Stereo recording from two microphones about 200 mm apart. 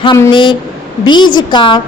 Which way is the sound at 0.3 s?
25° left (ahead or behind).